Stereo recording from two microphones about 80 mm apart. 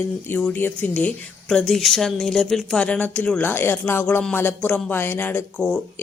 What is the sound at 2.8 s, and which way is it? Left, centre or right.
Speech, centre.